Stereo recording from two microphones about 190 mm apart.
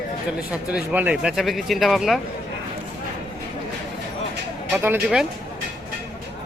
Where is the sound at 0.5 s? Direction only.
5° right (ahead or behind).